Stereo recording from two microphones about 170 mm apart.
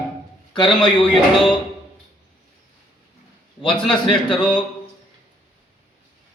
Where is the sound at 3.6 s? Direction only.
30° left (ahead or behind).